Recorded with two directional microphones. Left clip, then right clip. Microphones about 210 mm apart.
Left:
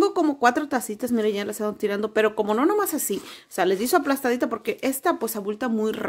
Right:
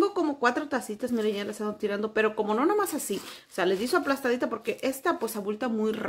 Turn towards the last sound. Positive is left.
turn(degrees=30)  # may be behind; listen again after turning